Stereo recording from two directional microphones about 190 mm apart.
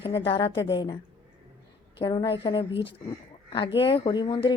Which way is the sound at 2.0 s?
25° left (ahead or behind).